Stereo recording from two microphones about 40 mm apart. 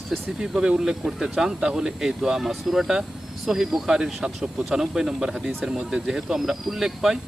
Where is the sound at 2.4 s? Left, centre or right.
Centre.